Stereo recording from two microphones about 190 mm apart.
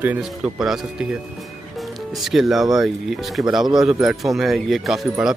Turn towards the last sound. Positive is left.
turn(degrees=0)  # may be behind; listen again after turning